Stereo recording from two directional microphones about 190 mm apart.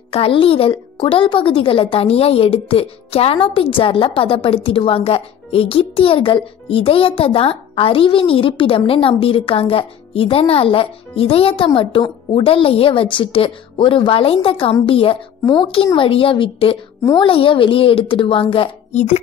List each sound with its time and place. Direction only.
0.1 s speech: 30° left (ahead or behind)